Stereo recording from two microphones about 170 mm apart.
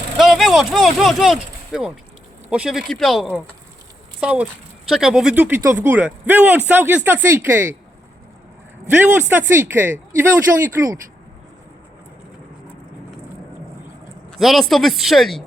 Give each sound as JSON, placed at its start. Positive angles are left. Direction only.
{"t": 0.2, "sound": "speech", "side_deg": 0}
{"t": 8.9, "sound": "speech", "side_deg": -10}
{"t": 14.3, "sound": "speech", "side_deg": 0}